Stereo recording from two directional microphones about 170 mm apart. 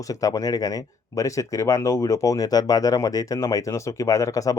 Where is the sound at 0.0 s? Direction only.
20° left (ahead or behind).